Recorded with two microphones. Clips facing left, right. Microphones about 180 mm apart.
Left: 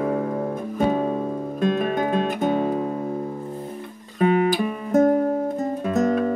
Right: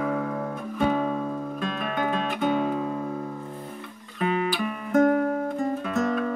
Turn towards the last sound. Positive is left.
turn(degrees=35)  # may be behind; listen again after turning